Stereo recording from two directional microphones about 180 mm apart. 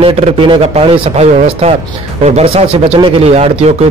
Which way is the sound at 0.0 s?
30° right (ahead or behind).